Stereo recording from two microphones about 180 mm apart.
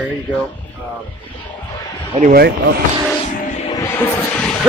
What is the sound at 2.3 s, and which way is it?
Speech, 60° right (ahead or behind).